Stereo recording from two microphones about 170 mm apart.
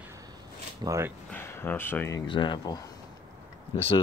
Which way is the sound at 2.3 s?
30° left (ahead or behind).